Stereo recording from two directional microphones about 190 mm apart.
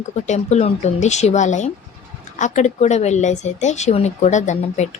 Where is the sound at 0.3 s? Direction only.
35° left (ahead or behind).